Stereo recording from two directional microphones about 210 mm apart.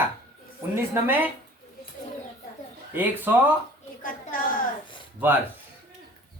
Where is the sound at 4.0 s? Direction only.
40° left (ahead or behind).